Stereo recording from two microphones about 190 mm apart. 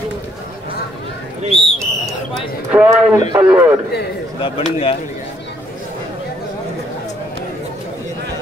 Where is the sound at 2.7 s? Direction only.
5° right (ahead or behind).